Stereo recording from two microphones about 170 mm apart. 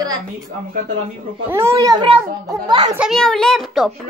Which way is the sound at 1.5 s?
15° right (ahead or behind).